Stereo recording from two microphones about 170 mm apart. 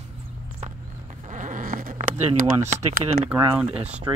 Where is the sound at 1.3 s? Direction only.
45° right (ahead or behind).